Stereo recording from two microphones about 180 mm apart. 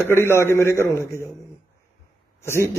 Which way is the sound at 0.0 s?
15° left (ahead or behind).